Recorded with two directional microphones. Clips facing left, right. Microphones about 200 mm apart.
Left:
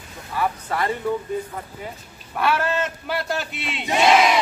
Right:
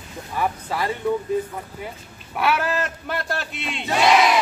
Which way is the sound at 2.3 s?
5° right (ahead or behind).